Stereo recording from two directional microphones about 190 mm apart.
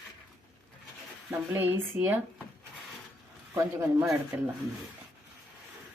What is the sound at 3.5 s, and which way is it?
Speech, 15° right (ahead or behind).